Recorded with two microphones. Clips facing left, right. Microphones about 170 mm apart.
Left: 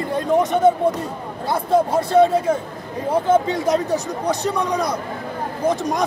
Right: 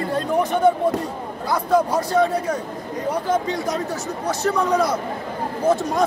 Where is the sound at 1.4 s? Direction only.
25° left (ahead or behind).